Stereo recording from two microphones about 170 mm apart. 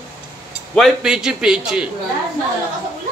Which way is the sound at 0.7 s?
Centre (ahead or behind).